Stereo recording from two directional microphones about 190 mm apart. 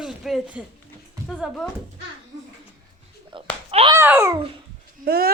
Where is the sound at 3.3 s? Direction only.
30° right (ahead or behind).